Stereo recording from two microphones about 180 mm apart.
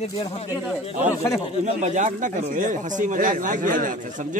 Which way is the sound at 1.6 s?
40° right (ahead or behind).